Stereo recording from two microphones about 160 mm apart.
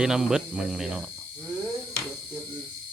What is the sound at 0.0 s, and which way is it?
Speech, 5° right (ahead or behind).